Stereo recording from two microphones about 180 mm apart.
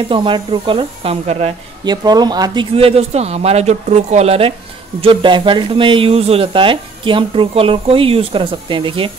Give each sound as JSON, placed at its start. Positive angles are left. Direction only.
{"t": 0.1, "sound": "speech", "side_deg": -30}
{"t": 1.9, "sound": "speech", "side_deg": -20}